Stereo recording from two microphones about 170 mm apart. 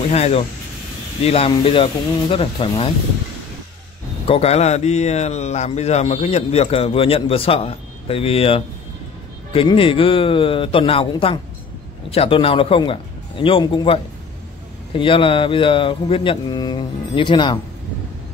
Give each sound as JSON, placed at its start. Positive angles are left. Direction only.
{"t": 0.1, "sound": "speech", "side_deg": 35}
{"t": 4.3, "sound": "speech", "side_deg": 40}
{"t": 15.0, "sound": "speech", "side_deg": 30}